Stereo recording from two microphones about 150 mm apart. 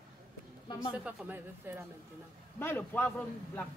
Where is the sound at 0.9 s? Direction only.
10° right (ahead or behind).